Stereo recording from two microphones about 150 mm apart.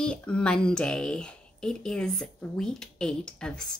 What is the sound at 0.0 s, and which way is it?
Speech, 5° left (ahead or behind).